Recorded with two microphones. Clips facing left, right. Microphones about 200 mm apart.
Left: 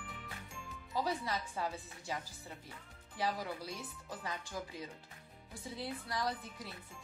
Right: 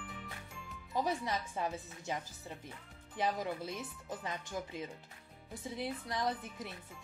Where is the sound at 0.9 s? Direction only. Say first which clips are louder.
Right 2 dB; 20° right (ahead or behind).